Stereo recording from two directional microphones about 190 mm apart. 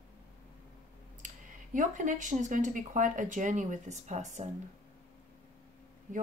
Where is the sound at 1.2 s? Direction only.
40° right (ahead or behind).